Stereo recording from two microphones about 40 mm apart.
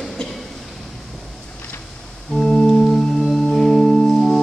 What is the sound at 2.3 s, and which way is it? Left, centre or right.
Music, centre.